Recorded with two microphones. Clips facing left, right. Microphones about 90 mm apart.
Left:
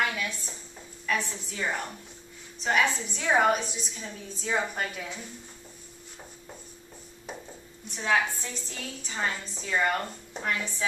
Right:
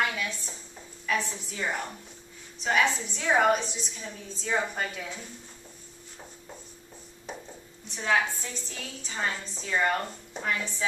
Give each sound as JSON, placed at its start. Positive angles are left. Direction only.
{"t": 0.0, "sound": "a woman's voice", "side_deg": 0}
{"t": 7.9, "sound": "a woman's voice", "side_deg": 0}